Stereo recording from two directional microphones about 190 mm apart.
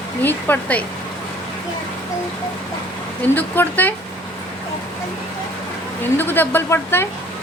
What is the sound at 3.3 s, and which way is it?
Speech, 10° left (ahead or behind).